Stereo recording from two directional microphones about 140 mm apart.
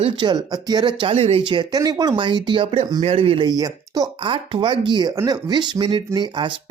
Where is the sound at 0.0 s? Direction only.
30° right (ahead or behind).